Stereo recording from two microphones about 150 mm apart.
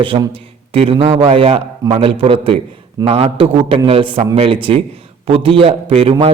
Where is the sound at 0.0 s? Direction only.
35° right (ahead or behind).